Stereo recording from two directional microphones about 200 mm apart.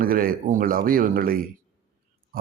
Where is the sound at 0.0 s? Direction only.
45° right (ahead or behind).